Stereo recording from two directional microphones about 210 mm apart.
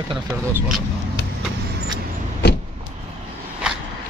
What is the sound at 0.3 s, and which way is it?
Speech, 10° right (ahead or behind).